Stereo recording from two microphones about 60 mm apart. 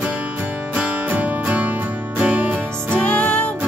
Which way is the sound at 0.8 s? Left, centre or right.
Right.